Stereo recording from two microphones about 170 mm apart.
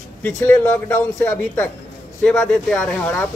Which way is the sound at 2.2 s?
5° left (ahead or behind).